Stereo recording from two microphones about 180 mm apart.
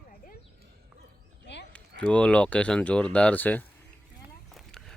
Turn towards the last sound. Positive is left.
turn(degrees=0)  # may be behind; listen again after turning